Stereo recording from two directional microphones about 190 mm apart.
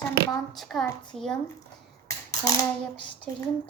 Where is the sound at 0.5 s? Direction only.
Centre (ahead or behind).